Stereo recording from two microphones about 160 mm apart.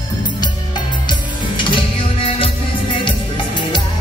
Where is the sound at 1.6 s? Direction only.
30° left (ahead or behind).